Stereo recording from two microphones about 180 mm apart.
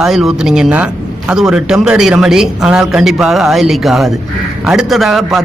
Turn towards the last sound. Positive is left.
turn(degrees=0)  # may be behind; listen again after turning